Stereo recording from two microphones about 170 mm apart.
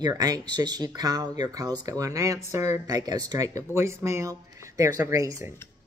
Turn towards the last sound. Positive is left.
turn(degrees=-20)  # may be behind; listen again after turning